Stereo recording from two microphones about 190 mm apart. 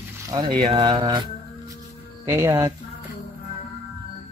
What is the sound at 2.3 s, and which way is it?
Speech, 15° right (ahead or behind).